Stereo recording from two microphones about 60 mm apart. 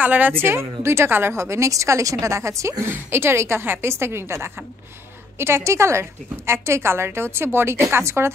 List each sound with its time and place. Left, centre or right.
0.0 s a woman's voice: right
0.4 s a woman's voice: right
1.3 s a woman's voice: right
2.8 s a woman's voice: right